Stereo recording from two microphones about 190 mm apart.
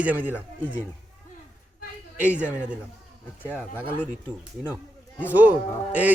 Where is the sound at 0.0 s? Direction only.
10° right (ahead or behind).